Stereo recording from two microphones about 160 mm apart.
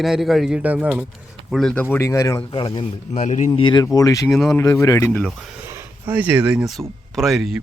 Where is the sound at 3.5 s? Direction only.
30° left (ahead or behind); by 5.3 s 10° left (ahead or behind).